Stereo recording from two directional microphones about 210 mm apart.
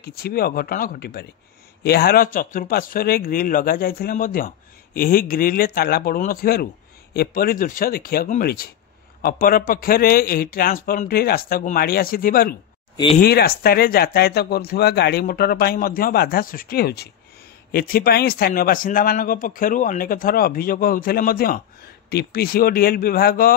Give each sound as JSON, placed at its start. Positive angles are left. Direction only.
{"t": 0.0, "sound": "speech", "side_deg": 45}
{"t": 12.9, "sound": "speech", "side_deg": 25}
{"t": 13.2, "sound": "speech", "side_deg": 45}